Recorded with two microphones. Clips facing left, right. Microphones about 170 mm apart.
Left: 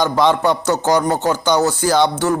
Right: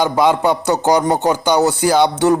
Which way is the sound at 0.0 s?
10° right (ahead or behind).